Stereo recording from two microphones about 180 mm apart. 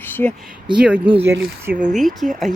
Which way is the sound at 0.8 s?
5° right (ahead or behind).